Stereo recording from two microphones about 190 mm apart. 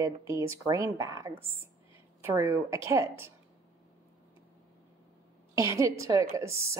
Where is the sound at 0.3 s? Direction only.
15° right (ahead or behind).